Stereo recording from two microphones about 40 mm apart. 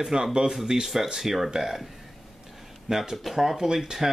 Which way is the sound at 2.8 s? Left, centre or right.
Centre.